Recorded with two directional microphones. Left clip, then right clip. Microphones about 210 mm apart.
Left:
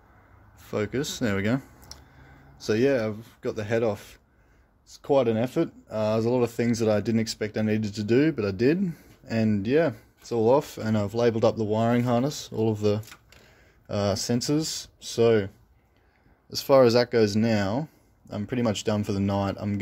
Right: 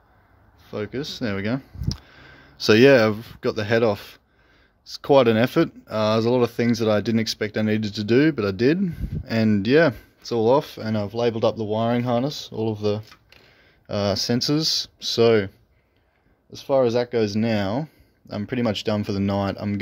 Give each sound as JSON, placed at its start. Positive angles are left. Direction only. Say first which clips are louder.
{"t": 0.7, "sound": "speech", "louder": "left 1 dB", "side_deg": 10}
{"t": 2.0, "sound": "speech", "louder": "right 7 dB", "side_deg": -30}
{"t": 16.5, "sound": "speech", "louder": "left 1 dB", "side_deg": 10}